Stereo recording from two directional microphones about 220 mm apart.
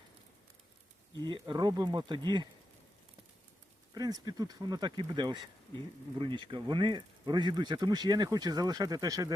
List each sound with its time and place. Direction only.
1.3 s speech: 20° right (ahead or behind)
3.9 s speech: 15° right (ahead or behind)